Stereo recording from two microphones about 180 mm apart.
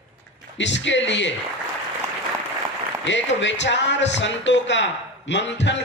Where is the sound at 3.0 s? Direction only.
90° left.